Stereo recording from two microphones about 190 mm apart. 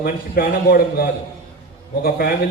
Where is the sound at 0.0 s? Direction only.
50° left (ahead or behind).